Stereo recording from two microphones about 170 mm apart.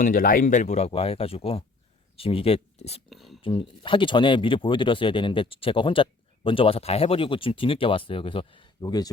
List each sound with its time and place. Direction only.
0.0 s speech: 55° left (ahead or behind); by 3.0 s 35° left (ahead or behind)
3.1 s a sound: centre (ahead or behind)
3.4 s speech: 30° left (ahead or behind)